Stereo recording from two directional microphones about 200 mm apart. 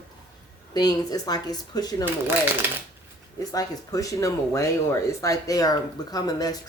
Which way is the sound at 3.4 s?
15° left (ahead or behind).